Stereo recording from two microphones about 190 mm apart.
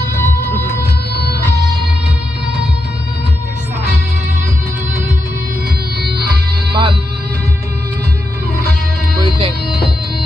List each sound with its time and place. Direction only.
6.0 s music: 55° right (ahead or behind)
6.7 s music: 25° right (ahead or behind)